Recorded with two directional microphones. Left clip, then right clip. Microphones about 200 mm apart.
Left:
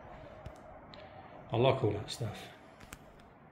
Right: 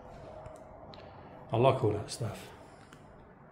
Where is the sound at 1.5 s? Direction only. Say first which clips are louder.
Right 3 dB; 10° right (ahead or behind).